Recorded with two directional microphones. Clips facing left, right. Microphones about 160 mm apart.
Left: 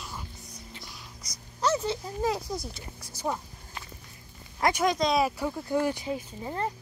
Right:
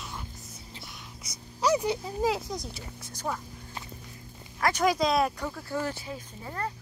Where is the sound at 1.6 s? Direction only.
15° right (ahead or behind).